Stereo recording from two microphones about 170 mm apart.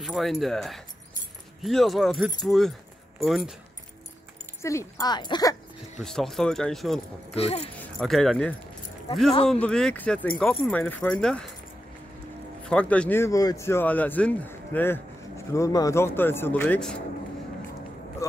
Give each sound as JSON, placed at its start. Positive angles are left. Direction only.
{"t": 0.0, "sound": "speech", "side_deg": 0}
{"t": 4.6, "sound": "speech", "side_deg": 15}
{"t": 5.9, "sound": "speech", "side_deg": 0}
{"t": 7.3, "sound": "speech", "side_deg": 35}
{"t": 7.8, "sound": "speech", "side_deg": 5}
{"t": 12.6, "sound": "speech", "side_deg": 5}